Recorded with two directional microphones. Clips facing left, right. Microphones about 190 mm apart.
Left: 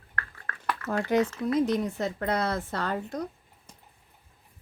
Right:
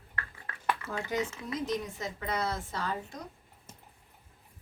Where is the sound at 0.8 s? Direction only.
65° left (ahead or behind).